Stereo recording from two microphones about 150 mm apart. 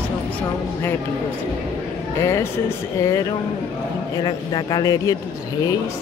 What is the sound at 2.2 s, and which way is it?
Speech, 15° left (ahead or behind).